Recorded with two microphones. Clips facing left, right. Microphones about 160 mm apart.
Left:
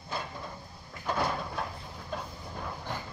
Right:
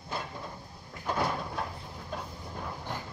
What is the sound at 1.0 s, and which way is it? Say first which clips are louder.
Vehicle: even; 10° right (ahead or behind).